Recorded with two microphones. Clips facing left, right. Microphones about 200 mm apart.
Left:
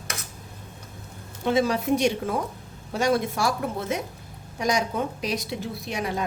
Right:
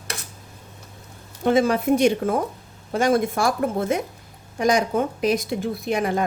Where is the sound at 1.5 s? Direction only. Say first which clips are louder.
Right 4 dB; 50° right (ahead or behind).